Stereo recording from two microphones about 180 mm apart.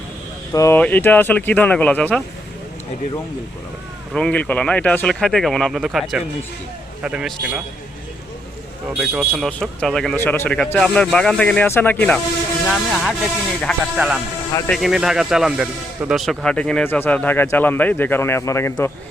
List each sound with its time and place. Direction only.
0.5 s speech: 15° left (ahead or behind)
4.1 s speech: 5° left (ahead or behind)
9.0 s speech: centre (ahead or behind)